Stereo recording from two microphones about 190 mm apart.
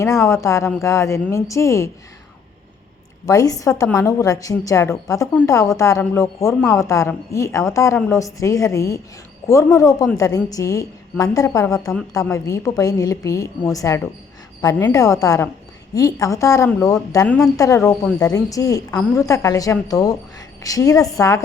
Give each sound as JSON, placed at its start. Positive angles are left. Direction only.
{"t": 0.0, "sound": "a woman's voice", "side_deg": 15}
{"t": 3.2, "sound": "a woman's voice", "side_deg": 20}
{"t": 17.2, "sound": "a woman's voice", "side_deg": 0}
{"t": 17.6, "sound": "a woman's voice", "side_deg": 15}